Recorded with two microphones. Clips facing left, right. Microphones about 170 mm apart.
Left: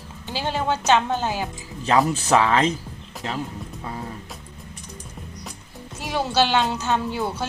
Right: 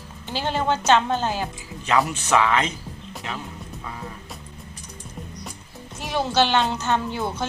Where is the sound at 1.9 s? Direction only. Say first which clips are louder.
Left 3 dB; 35° left (ahead or behind).